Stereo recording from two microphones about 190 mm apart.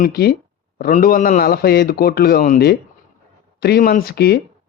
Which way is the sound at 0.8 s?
45° left (ahead or behind).